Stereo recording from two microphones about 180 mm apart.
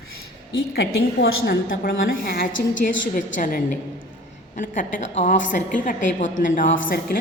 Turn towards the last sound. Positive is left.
turn(degrees=55)  # may be behind; listen again after turning